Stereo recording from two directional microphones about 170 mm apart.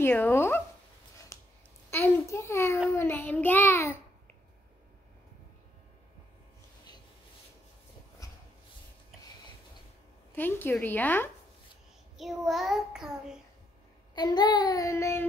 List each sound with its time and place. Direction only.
0.0 s child singing: 10° left (ahead or behind)
1.3 s a sound: 15° left (ahead or behind)
1.9 s a child's voice: 10° left (ahead or behind)
2.9 s child singing: 15° left (ahead or behind)
10.3 s child singing: 10° left (ahead or behind)
12.2 s child singing: centre (ahead or behind)
14.1 s child singing: 25° left (ahead or behind)